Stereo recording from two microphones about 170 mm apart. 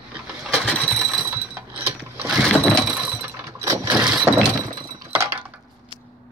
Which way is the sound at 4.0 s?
5° right (ahead or behind).